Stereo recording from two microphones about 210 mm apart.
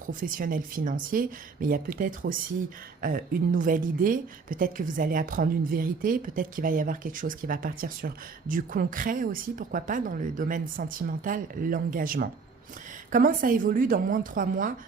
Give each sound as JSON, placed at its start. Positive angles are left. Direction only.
{"t": 0.0, "sound": "a woman's voice", "side_deg": -40}